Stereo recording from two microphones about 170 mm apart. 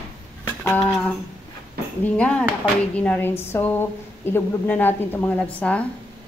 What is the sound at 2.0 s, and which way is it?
A woman's voice, 5° left (ahead or behind).